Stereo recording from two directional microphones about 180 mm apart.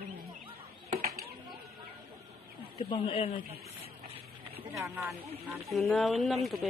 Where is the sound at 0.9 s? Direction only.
35° right (ahead or behind).